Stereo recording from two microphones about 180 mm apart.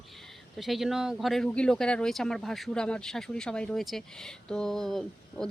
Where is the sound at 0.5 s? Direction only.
Centre (ahead or behind).